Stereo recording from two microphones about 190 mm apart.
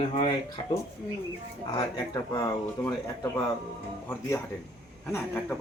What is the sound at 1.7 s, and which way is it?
Speech, 20° left (ahead or behind).